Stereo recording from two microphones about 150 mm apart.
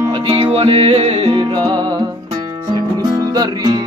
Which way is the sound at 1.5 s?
25° right (ahead or behind).